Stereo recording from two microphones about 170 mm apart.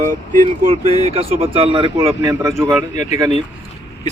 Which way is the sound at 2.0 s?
20° right (ahead or behind).